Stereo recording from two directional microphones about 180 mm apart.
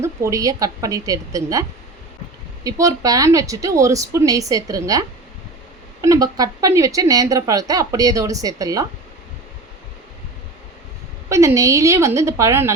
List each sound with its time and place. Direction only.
0.0 s speech: 15° right (ahead or behind)
2.6 s speech: 20° right (ahead or behind)
11.3 s a woman's voice: 15° right (ahead or behind)